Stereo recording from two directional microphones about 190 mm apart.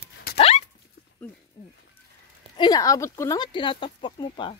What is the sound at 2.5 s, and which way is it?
Speech, 20° left (ahead or behind).